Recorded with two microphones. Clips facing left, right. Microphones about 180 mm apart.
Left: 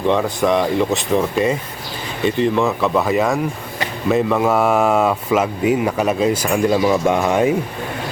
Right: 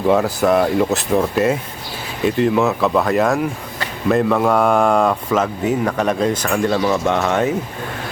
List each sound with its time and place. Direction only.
0.1 s speech: 5° right (ahead or behind)